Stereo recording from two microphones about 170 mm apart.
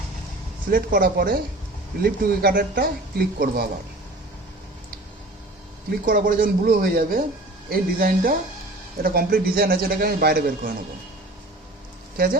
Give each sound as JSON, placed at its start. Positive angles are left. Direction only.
{"t": 0.7, "sound": "a man's voice", "side_deg": -60}
{"t": 6.1, "sound": "a man's voice", "side_deg": -55}
{"t": 12.1, "sound": "speech", "side_deg": -60}